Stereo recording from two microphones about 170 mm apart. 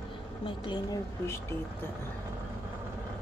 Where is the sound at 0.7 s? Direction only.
20° left (ahead or behind).